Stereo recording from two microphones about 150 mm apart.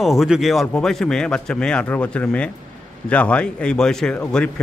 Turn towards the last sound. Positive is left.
turn(degrees=5)  # may be behind; listen again after turning